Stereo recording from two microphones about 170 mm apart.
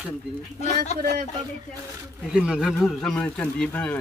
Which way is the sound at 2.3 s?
5° right (ahead or behind).